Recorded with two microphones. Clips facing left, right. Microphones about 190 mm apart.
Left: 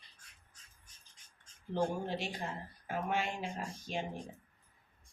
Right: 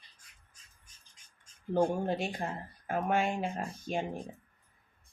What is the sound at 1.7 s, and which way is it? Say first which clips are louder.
Speech: right 6 dB; 50° right (ahead or behind).